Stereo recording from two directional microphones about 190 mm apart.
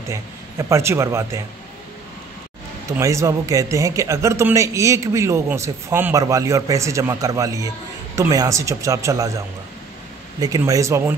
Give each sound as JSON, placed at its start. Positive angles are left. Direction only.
{"t": 0.0, "sound": "speech", "side_deg": -15}
{"t": 2.9, "sound": "speech", "side_deg": -15}
{"t": 10.4, "sound": "speech", "side_deg": -20}